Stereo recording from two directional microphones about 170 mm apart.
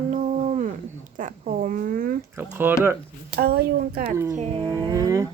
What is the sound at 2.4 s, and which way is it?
Speech, 10° right (ahead or behind).